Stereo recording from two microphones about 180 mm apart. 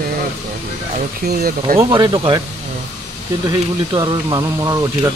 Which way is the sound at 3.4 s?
25° right (ahead or behind).